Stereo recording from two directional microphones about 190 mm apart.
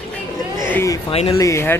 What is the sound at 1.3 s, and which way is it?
Speech, 15° left (ahead or behind).